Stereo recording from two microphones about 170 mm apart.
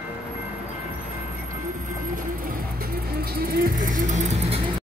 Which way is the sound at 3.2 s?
60° right (ahead or behind).